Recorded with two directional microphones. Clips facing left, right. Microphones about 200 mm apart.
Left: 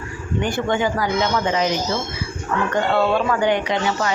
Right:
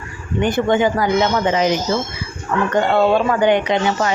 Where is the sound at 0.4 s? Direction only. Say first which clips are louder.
Right 6 dB; 20° right (ahead or behind).